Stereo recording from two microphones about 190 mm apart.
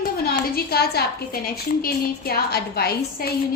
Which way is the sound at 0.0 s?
50° left (ahead or behind).